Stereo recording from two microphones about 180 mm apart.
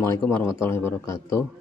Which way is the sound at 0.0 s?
10° left (ahead or behind).